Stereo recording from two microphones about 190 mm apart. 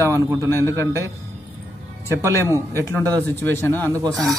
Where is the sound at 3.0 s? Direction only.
10° left (ahead or behind).